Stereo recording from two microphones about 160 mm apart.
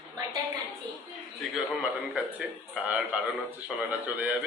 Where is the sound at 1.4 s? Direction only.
5° right (ahead or behind).